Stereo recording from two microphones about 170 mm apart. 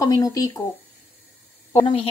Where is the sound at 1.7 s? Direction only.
35° left (ahead or behind).